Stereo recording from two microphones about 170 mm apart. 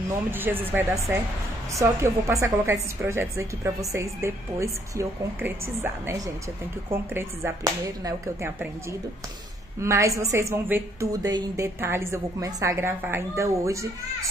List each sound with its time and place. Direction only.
0.3 s a woman's voice: 10° right (ahead or behind)
9.8 s a woman's voice: 15° right (ahead or behind)